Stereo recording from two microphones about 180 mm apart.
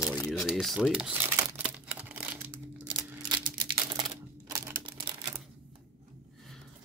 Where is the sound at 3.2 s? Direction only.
25° right (ahead or behind).